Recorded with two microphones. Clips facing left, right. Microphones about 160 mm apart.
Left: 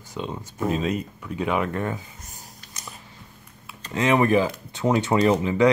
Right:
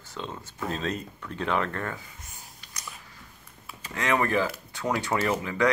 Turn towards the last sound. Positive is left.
turn(degrees=25)  # may be behind; listen again after turning